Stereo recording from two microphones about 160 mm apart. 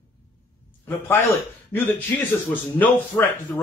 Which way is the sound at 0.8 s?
10° left (ahead or behind).